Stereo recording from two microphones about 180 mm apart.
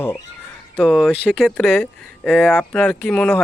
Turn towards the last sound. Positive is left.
turn(degrees=5)  # may be behind; listen again after turning